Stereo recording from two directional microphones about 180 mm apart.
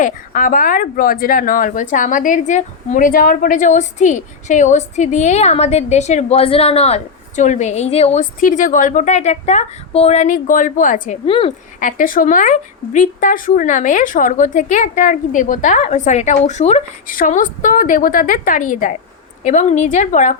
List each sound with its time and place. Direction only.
0.0 s speech: 50° left (ahead or behind)
11.3 s a woman's voice: 30° left (ahead or behind)
11.8 s speech: 50° left (ahead or behind)